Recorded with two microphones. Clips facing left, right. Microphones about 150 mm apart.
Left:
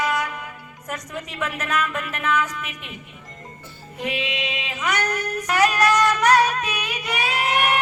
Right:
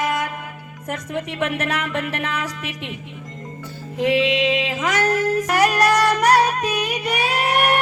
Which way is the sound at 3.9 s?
90° right.